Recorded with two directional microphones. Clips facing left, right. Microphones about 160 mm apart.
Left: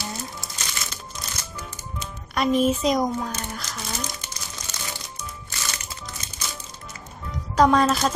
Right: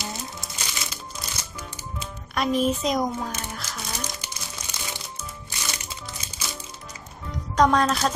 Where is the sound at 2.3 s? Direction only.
Centre (ahead or behind).